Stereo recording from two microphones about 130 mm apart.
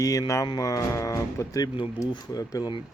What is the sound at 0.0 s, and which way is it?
Speech, 25° left (ahead or behind).